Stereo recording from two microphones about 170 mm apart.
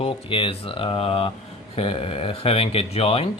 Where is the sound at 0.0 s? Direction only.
30° left (ahead or behind).